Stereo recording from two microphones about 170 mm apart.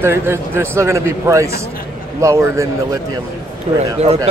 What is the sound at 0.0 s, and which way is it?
Speech, 15° right (ahead or behind).